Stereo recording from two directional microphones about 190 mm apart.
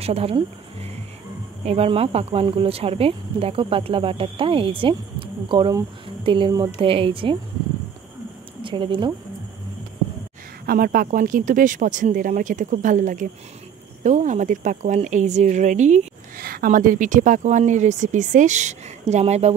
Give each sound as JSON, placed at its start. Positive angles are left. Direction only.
{"t": 0.0, "sound": "speech", "side_deg": -30}
{"t": 8.6, "sound": "speech", "side_deg": -25}
{"t": 10.7, "sound": "speech", "side_deg": -50}